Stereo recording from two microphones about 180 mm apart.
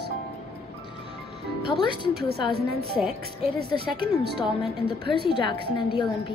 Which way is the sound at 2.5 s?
60° right (ahead or behind).